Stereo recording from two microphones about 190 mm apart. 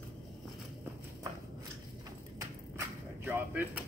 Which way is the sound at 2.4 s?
15° right (ahead or behind).